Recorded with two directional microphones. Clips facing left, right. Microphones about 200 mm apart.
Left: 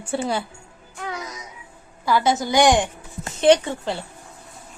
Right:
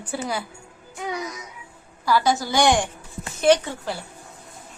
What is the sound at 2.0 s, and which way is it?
A woman's voice, 20° left (ahead or behind).